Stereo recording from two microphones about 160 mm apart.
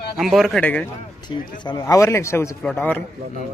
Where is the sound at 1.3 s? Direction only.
30° left (ahead or behind).